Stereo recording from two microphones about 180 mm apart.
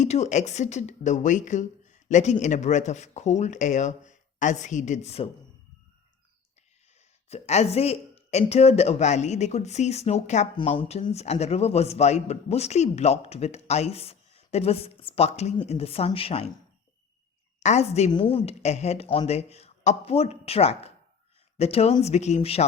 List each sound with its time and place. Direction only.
0.0 s speech: 40° left (ahead or behind)
7.3 s speech: 35° left (ahead or behind)
17.6 s speech: 40° left (ahead or behind)